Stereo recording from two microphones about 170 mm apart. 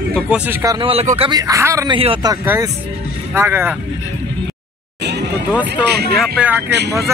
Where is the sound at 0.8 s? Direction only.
40° right (ahead or behind).